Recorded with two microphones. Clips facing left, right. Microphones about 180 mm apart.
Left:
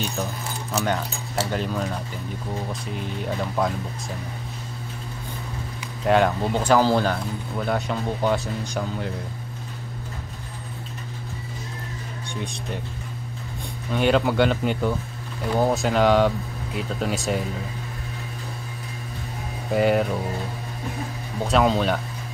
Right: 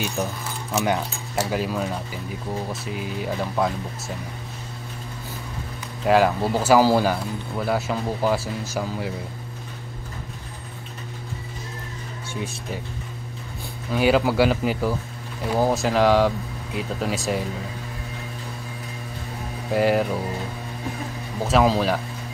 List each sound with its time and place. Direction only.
0.0 s speech: 10° right (ahead or behind)
6.0 s speech: 5° right (ahead or behind)
12.4 s speech: 5° right (ahead or behind)
13.9 s speech: 5° right (ahead or behind)
19.7 s speech: centre (ahead or behind)
21.5 s speech: centre (ahead or behind)